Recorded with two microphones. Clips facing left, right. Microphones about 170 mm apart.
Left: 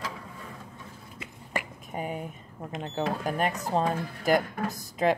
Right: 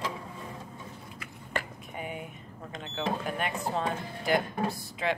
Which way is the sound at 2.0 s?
40° left (ahead or behind).